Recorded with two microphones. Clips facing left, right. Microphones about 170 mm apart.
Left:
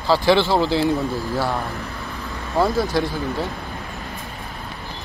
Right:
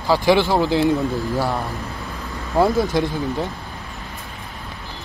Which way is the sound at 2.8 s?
20° right (ahead or behind).